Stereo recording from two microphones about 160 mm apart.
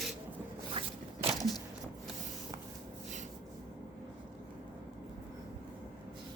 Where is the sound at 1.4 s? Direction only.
25° left (ahead or behind).